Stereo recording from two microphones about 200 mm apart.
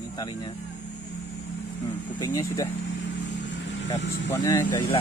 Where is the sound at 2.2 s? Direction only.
15° left (ahead or behind).